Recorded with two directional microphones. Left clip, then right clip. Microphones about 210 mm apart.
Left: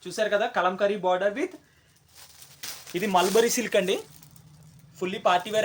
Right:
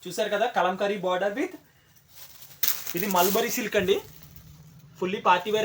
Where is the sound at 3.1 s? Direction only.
55° left (ahead or behind).